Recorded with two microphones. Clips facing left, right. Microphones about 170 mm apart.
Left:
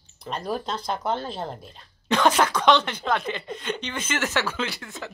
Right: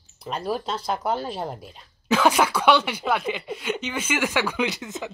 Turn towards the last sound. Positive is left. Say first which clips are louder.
# right 5 dB
turn(degrees=-20)  # may be behind; listen again after turning